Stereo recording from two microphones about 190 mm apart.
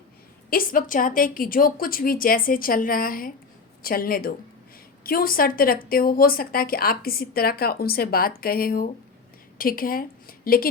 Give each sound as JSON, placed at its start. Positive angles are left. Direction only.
{"t": 0.5, "sound": "speech", "side_deg": 50}